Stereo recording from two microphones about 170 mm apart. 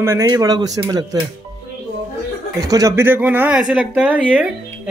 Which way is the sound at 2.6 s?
20° right (ahead or behind).